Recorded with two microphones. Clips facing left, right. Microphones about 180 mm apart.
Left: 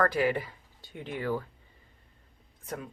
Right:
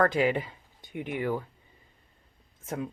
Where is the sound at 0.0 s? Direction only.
20° right (ahead or behind).